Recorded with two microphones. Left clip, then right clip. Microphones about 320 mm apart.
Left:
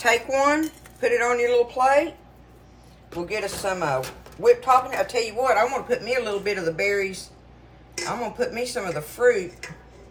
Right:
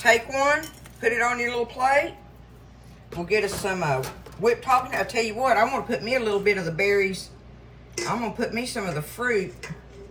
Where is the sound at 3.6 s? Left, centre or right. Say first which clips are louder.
Left 1 dB; centre.